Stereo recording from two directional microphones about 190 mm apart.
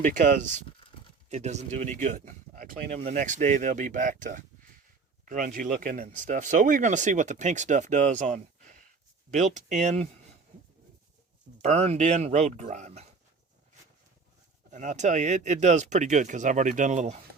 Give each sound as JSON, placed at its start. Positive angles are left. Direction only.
{"t": 0.0, "sound": "speech", "side_deg": -45}
{"t": 11.6, "sound": "speech", "side_deg": -35}
{"t": 14.7, "sound": "speech", "side_deg": -40}